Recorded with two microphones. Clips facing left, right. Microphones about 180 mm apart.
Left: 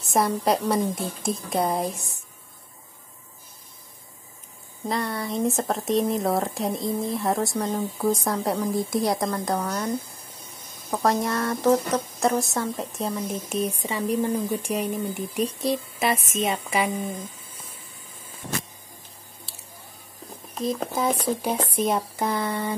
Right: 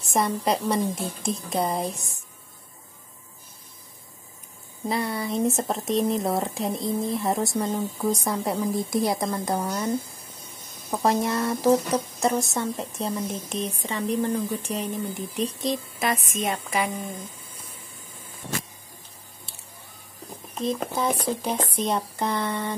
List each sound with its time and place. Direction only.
0.1 s speech: centre (ahead or behind)
4.8 s speech: 5° right (ahead or behind)
20.5 s speech: centre (ahead or behind)